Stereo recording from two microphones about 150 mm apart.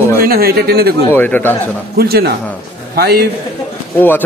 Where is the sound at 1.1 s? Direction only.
10° left (ahead or behind).